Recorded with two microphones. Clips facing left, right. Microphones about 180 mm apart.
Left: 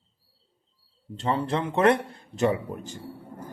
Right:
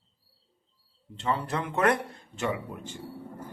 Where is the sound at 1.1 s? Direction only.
30° left (ahead or behind).